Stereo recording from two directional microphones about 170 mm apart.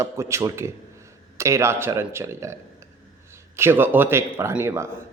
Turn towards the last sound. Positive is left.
turn(degrees=-15)  # may be behind; listen again after turning